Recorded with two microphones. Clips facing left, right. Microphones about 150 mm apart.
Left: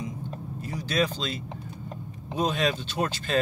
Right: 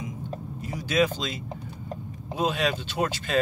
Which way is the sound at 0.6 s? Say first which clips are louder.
Right 3 dB; 15° right (ahead or behind).